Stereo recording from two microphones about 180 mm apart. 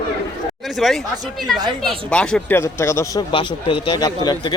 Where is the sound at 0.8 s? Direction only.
Centre (ahead or behind).